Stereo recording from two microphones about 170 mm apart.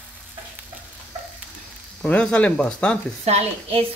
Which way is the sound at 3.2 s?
40° right (ahead or behind).